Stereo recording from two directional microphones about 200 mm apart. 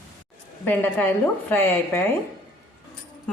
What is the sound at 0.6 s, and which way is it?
Speech, 10° left (ahead or behind).